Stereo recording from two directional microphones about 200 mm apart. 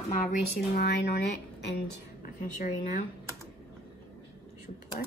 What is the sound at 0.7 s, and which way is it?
Speech, 55° left (ahead or behind).